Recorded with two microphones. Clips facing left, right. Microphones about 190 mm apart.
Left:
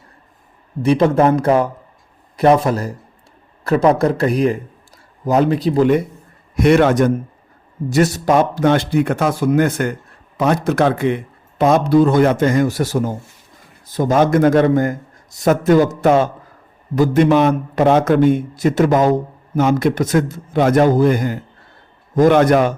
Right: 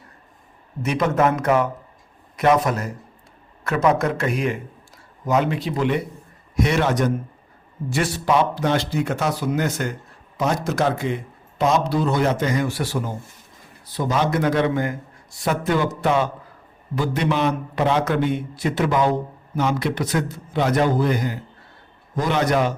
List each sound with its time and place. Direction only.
0.8 s a man's voice: 30° left (ahead or behind)
6.6 s a man's voice: 55° left (ahead or behind)
7.9 s a man's voice: 40° left (ahead or behind)